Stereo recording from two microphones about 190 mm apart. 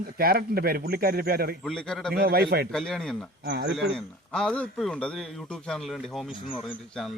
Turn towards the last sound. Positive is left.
turn(degrees=0)  # may be behind; listen again after turning